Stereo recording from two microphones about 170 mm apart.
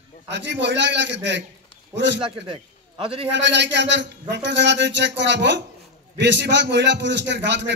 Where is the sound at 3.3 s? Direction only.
90° right.